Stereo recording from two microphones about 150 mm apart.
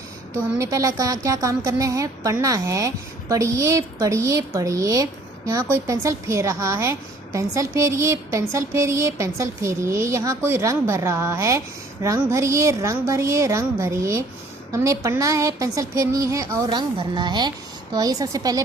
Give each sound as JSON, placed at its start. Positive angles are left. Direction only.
{"t": 0.6, "sound": "a woman's voice", "side_deg": -25}